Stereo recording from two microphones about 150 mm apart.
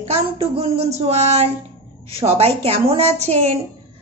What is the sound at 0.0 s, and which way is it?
Speech, 40° right (ahead or behind).